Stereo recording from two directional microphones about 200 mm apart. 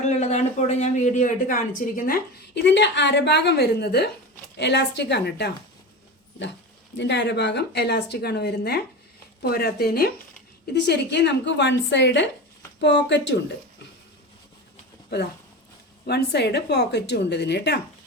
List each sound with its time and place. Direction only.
0.0 s a woman's voice: 35° left (ahead or behind); by 5.5 s 55° left (ahead or behind)
6.9 s a woman's voice: 60° left (ahead or behind)
15.1 s a woman's voice: 55° left (ahead or behind)